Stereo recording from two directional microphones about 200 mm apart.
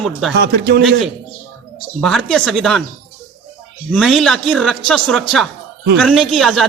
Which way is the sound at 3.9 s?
Centre (ahead or behind).